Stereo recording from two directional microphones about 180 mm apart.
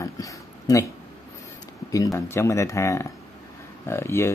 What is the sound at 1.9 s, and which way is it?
Speech, 20° left (ahead or behind).